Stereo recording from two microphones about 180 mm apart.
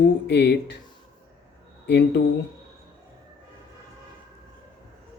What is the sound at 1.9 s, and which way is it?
Speech, 65° left (ahead or behind).